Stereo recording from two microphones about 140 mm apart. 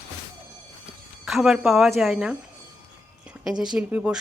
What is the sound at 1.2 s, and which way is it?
Speech, 5° right (ahead or behind).